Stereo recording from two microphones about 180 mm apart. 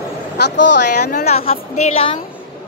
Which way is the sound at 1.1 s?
40° left (ahead or behind).